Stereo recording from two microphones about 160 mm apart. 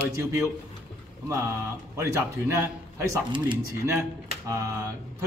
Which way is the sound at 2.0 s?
15° right (ahead or behind).